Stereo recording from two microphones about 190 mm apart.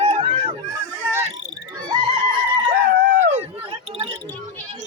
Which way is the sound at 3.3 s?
35° right (ahead or behind).